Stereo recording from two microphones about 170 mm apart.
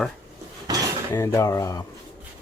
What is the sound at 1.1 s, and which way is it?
Speech, 20° left (ahead or behind).